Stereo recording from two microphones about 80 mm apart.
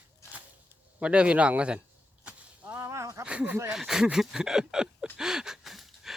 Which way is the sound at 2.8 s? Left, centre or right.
Right.